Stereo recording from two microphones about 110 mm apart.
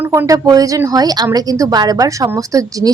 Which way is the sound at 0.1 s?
30° right (ahead or behind).